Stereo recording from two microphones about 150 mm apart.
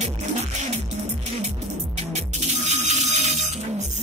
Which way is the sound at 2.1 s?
45° right (ahead or behind).